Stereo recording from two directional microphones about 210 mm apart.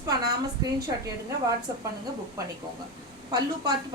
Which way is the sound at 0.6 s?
15° right (ahead or behind).